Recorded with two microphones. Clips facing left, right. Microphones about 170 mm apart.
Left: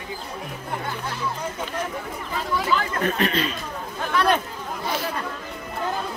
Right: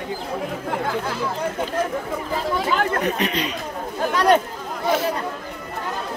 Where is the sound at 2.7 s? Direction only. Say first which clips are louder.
Right 3 dB; 65° right (ahead or behind).